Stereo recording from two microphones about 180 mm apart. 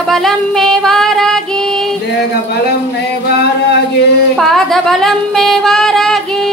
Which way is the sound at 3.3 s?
60° left (ahead or behind).